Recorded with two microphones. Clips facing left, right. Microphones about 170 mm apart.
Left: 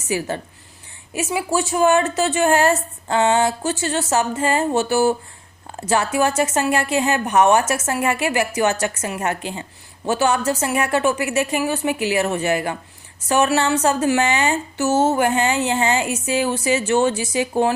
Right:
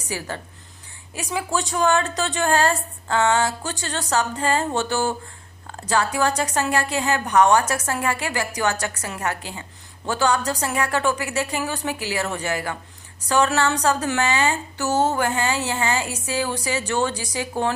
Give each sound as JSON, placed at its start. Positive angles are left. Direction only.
{"t": 0.1, "sound": "a woman's voice", "side_deg": 15}